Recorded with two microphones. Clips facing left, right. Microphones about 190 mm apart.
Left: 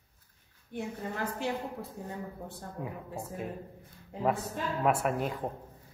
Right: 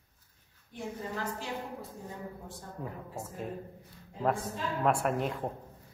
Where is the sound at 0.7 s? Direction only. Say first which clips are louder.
Left 4 dB; 60° left (ahead or behind).